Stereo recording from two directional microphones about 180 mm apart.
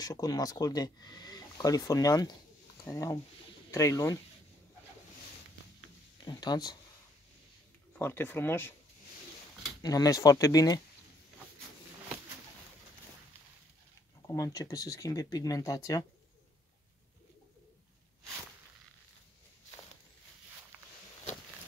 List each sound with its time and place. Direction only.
0.0 s speech: 20° left (ahead or behind)
6.2 s speech: 20° left (ahead or behind)
8.0 s speech: 10° left (ahead or behind)
9.8 s speech: 20° left (ahead or behind)
14.2 s speech: 20° left (ahead or behind)